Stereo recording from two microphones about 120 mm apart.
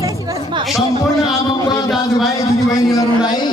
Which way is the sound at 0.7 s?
Centre (ahead or behind).